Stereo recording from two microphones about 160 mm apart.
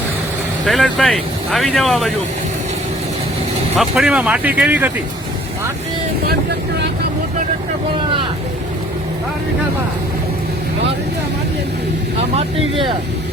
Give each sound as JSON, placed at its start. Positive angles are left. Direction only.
{"t": 0.6, "sound": "speech", "side_deg": 0}
{"t": 3.8, "sound": "speech", "side_deg": -5}
{"t": 12.4, "sound": "speech", "side_deg": -35}